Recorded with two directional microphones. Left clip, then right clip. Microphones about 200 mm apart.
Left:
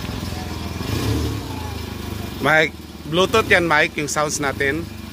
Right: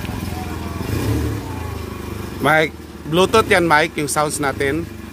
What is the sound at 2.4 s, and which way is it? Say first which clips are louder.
Speech: right 1 dB; 15° right (ahead or behind).